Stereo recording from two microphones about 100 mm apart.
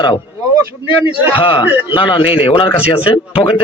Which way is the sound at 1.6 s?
15° right (ahead or behind).